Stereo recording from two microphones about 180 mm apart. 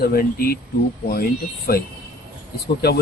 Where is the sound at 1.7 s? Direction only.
55° left (ahead or behind).